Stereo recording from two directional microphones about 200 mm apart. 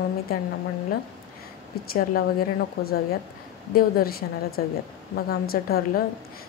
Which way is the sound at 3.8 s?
50° left (ahead or behind).